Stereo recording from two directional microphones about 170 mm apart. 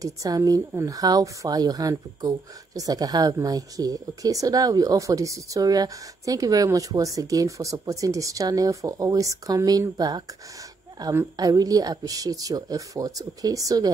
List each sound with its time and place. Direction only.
0.0 s a woman's voice: 20° right (ahead or behind)